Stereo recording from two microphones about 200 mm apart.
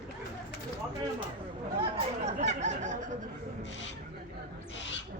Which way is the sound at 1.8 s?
30° right (ahead or behind).